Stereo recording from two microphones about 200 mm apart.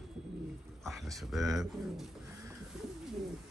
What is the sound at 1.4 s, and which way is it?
Speech, 15° right (ahead or behind).